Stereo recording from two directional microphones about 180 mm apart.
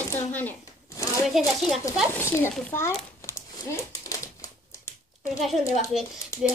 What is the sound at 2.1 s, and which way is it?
Speech, 15° left (ahead or behind).